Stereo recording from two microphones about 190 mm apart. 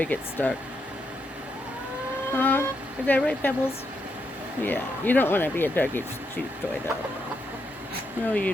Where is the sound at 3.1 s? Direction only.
10° left (ahead or behind).